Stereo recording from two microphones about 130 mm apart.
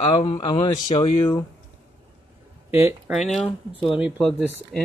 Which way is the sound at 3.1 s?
5° right (ahead or behind).